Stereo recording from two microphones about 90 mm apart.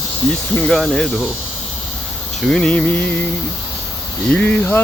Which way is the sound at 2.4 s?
5° left (ahead or behind).